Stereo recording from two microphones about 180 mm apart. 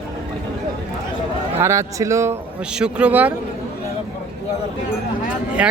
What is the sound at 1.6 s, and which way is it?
Speech, 15° right (ahead or behind).